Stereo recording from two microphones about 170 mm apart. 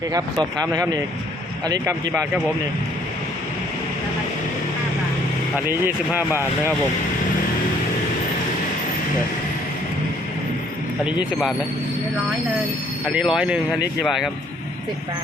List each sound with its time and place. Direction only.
0.1 s speech: 20° right (ahead or behind)
5.5 s speech: 10° right (ahead or behind)
13.1 s speech: 5° right (ahead or behind)